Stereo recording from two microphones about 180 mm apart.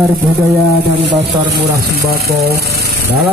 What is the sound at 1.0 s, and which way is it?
Speech, 70° right (ahead or behind).